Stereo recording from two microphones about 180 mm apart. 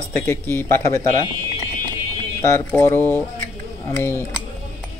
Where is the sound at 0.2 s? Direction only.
10° left (ahead or behind).